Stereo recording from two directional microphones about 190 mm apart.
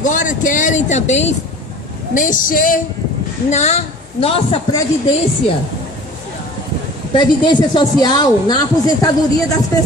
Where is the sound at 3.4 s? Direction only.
35° left (ahead or behind).